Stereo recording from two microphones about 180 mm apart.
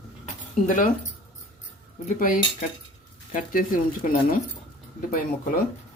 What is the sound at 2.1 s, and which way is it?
Speech, 50° left (ahead or behind).